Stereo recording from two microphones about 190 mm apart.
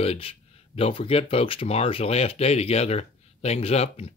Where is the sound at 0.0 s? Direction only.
30° left (ahead or behind).